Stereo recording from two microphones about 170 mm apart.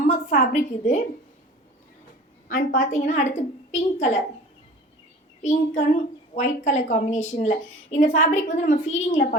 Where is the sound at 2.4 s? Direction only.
55° left (ahead or behind).